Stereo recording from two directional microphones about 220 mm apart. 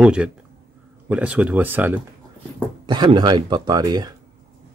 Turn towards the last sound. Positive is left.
turn(degrees=-20)  # may be behind; listen again after turning